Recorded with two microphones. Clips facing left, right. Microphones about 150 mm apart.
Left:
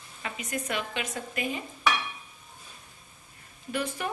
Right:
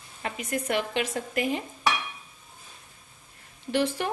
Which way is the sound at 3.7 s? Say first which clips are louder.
Right 5 dB; 70° right (ahead or behind).